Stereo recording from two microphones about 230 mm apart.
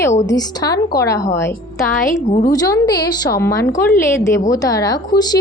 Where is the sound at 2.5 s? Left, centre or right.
Centre.